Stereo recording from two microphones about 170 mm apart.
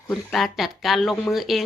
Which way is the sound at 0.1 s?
Centre (ahead or behind).